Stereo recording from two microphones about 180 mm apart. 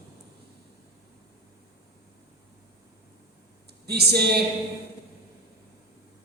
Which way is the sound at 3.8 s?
65° right (ahead or behind).